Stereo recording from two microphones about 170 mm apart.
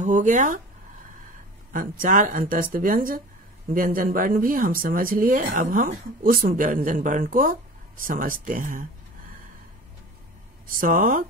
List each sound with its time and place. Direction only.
0.0 s speech: 45° right (ahead or behind)
1.7 s speech: 50° right (ahead or behind)
10.7 s speech: 50° right (ahead or behind)